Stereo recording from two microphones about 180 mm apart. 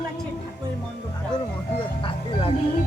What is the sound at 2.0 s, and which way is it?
Music, 30° left (ahead or behind).